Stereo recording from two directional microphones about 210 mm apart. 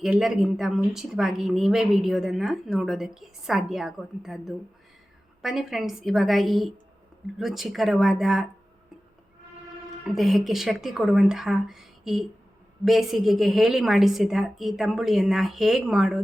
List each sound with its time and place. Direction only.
0.0 s speech: centre (ahead or behind)
10.0 s speech: centre (ahead or behind)